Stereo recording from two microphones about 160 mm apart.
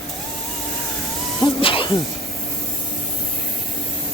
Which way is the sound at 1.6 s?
35° left (ahead or behind).